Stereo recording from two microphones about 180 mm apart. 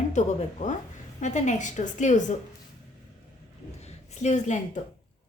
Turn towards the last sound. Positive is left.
turn(degrees=40)  # may be behind; listen again after turning